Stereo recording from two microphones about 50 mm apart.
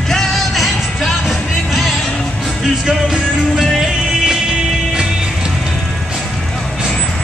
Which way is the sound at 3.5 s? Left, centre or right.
Centre.